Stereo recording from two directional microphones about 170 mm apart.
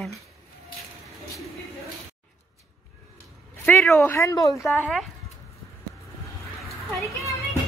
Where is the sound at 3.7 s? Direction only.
10° left (ahead or behind).